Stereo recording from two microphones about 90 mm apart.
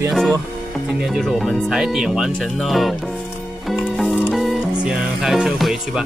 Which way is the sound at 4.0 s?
Centre (ahead or behind).